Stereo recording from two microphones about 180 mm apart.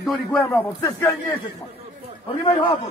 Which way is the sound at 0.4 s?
10° left (ahead or behind).